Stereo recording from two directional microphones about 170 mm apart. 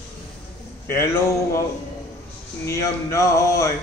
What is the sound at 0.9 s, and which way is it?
Speech, 15° left (ahead or behind).